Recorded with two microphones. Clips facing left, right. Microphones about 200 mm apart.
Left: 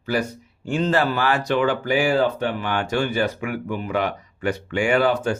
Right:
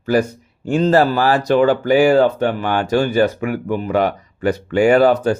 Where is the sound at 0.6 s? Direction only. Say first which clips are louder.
Right 7 dB; 40° right (ahead or behind).